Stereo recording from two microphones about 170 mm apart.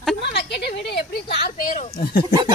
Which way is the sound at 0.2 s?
80° left.